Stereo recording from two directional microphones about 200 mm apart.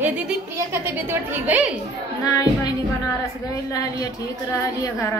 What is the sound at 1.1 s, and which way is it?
Speech, 10° right (ahead or behind).